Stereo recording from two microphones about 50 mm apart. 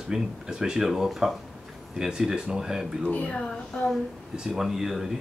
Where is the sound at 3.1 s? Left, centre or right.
Left.